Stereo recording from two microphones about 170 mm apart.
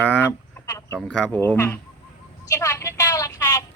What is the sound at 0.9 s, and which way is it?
Speech, 5° right (ahead or behind).